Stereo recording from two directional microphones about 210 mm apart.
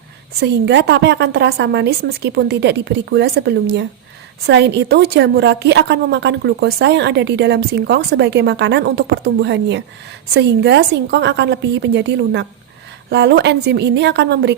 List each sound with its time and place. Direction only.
0.3 s a woman's voice: 55° right (ahead or behind)